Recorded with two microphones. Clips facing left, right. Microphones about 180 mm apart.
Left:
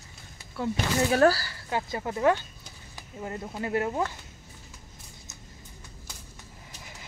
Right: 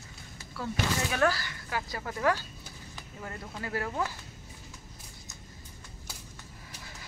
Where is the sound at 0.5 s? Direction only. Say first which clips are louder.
Left 6 dB; 25° left (ahead or behind).